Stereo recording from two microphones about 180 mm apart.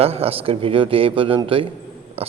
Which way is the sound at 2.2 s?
35° right (ahead or behind).